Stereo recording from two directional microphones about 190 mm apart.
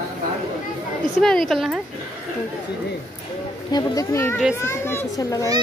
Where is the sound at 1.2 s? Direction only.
Centre (ahead or behind).